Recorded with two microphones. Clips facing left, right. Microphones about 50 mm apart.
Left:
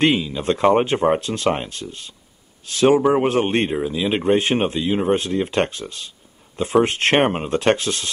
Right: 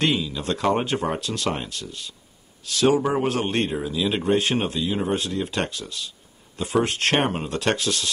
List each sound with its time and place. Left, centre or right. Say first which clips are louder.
0.0 s a man's voice: left 5 dB; left